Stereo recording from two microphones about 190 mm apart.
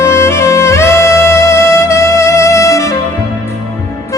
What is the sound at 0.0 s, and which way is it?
Music, 15° left (ahead or behind).